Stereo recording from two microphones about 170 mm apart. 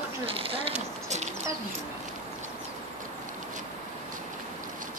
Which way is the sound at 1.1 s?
40° right (ahead or behind).